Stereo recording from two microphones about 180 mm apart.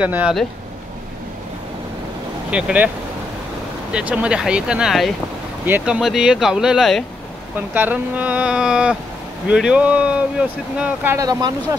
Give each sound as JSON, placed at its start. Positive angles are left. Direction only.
{"t": 0.0, "sound": "speech", "side_deg": -5}
{"t": 2.5, "sound": "speech", "side_deg": -5}
{"t": 3.9, "sound": "speech", "side_deg": -5}
{"t": 7.5, "sound": "speech", "side_deg": -10}